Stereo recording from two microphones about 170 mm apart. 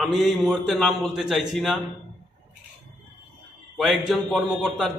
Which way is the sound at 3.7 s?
Centre (ahead or behind).